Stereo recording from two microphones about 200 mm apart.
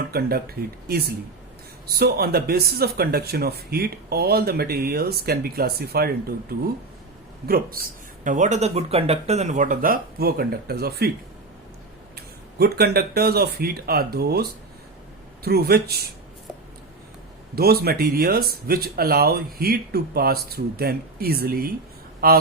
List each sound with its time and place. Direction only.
0.1 s speech: 50° right (ahead or behind)
7.4 s speech: 50° right (ahead or behind)
12.1 s speech: 50° right (ahead or behind)
15.4 s speech: 50° right (ahead or behind)
17.5 s a man's voice: 50° right (ahead or behind)